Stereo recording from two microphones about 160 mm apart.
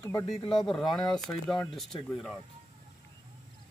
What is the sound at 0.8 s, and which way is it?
Speech, 25° left (ahead or behind).